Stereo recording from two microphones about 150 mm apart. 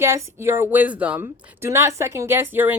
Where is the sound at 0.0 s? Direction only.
20° right (ahead or behind).